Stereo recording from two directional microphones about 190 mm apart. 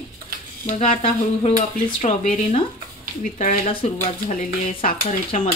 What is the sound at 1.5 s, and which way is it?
Speech, 45° left (ahead or behind).